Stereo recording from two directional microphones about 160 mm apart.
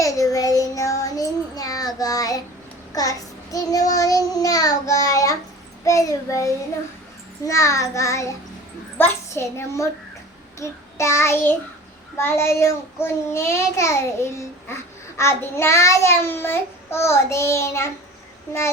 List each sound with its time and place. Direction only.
0.0 s child singing: 20° left (ahead or behind)
9.0 s a child's voice: 15° left (ahead or behind)
10.6 s child singing: 15° left (ahead or behind)